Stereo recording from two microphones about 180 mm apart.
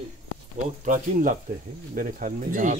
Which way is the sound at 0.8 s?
45° right (ahead or behind).